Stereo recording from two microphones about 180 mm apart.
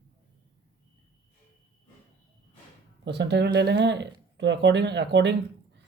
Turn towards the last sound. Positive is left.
turn(degrees=-75)  # may be behind; listen again after turning